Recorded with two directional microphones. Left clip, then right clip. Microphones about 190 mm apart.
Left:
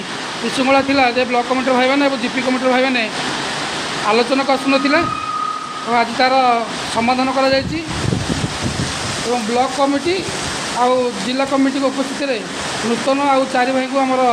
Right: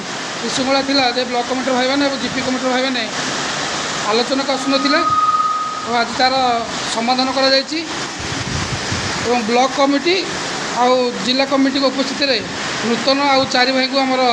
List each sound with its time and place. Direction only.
0.7 s speech: 15° left (ahead or behind)
4.1 s speech: 20° left (ahead or behind)
9.6 s speech: 10° right (ahead or behind); by 14.2 s 5° left (ahead or behind)